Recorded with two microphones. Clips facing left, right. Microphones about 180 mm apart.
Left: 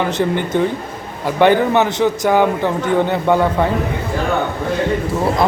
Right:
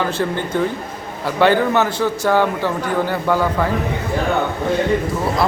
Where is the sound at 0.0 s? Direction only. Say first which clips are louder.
Left 3 dB; 20° left (ahead or behind).